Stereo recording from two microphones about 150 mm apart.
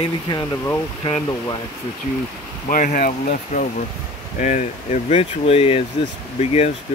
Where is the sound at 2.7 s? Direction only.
65° left (ahead or behind).